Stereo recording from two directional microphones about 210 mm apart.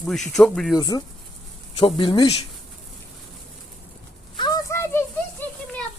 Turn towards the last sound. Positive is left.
turn(degrees=10)  # may be behind; listen again after turning